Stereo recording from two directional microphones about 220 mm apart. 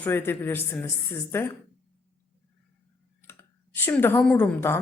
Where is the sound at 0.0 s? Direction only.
10° left (ahead or behind).